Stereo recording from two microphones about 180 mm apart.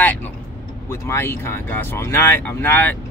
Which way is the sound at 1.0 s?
15° left (ahead or behind).